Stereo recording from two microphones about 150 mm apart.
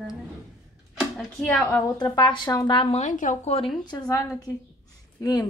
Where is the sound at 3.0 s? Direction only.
55° left (ahead or behind).